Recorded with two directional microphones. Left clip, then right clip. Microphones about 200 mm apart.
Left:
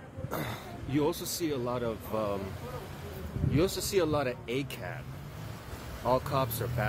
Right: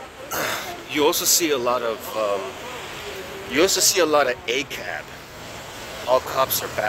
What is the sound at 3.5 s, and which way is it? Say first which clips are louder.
Speech: right 11 dB; 10° left (ahead or behind).